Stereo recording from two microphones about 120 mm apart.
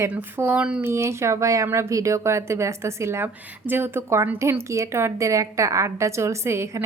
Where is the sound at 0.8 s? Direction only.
20° right (ahead or behind).